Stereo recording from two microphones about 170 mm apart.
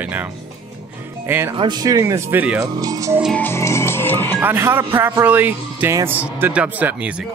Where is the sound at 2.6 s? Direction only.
20° right (ahead or behind).